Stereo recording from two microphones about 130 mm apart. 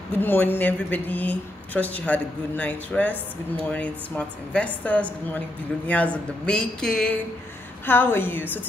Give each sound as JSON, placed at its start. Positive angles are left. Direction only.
{"t": 0.2, "sound": "speech", "side_deg": 15}
{"t": 7.8, "sound": "speech", "side_deg": 15}